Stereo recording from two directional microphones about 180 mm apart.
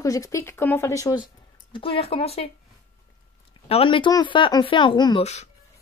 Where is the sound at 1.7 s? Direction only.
30° left (ahead or behind).